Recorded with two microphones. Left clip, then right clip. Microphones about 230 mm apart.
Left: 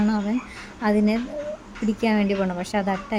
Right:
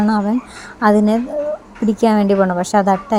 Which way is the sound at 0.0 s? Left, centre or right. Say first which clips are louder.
Right 8 dB; centre.